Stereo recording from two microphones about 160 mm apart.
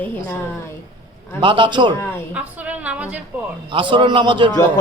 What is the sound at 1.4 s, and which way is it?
Speech, 30° right (ahead or behind).